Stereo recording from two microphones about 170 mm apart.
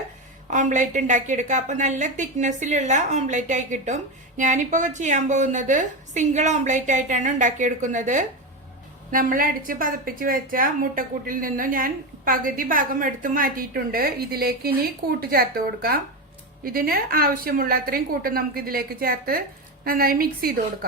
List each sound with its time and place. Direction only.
0.5 s a woman's voice: 45° right (ahead or behind)